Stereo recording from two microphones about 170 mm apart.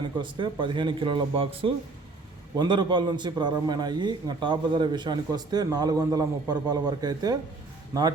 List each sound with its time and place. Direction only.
0.2 s a man's voice: 30° right (ahead or behind)